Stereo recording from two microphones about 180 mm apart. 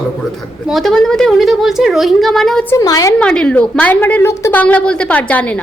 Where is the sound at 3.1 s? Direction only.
5° left (ahead or behind).